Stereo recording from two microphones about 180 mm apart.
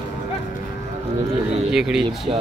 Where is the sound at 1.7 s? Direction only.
Centre (ahead or behind).